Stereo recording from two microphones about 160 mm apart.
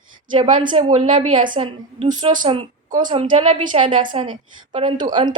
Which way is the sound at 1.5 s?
35° right (ahead or behind).